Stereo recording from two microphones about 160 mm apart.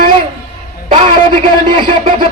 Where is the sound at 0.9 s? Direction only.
35° right (ahead or behind).